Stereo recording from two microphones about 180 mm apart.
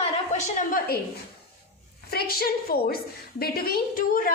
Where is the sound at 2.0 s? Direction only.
60° left (ahead or behind).